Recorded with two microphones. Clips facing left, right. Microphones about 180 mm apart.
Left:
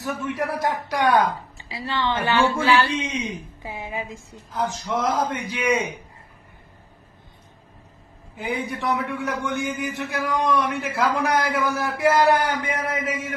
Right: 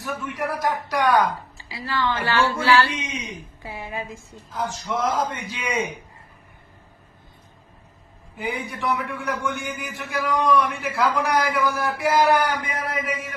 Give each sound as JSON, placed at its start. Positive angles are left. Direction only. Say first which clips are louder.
{"t": 0.0, "sound": "a man's voice", "louder": "left 2 dB", "side_deg": 25}
{"t": 2.9, "sound": "a woman's voice", "louder": "left 5 dB", "side_deg": 30}
{"t": 8.4, "sound": "a man's voice", "louder": "left 1 dB", "side_deg": 20}